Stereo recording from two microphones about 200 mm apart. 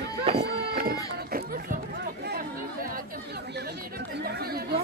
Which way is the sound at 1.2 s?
50° right (ahead or behind).